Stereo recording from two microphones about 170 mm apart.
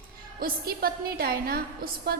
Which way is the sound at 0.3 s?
60° right (ahead or behind).